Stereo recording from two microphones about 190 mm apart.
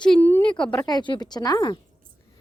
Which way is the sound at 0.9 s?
25° left (ahead or behind).